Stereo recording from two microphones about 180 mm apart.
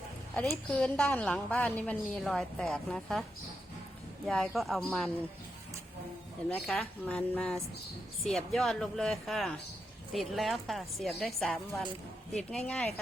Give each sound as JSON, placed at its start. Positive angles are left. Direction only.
{"t": 0.5, "sound": "a woman's voice", "side_deg": 5}
{"t": 4.3, "sound": "a woman's voice", "side_deg": 0}
{"t": 6.5, "sound": "a woman's voice", "side_deg": 5}